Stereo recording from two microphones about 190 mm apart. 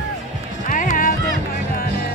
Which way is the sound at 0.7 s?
45° left (ahead or behind).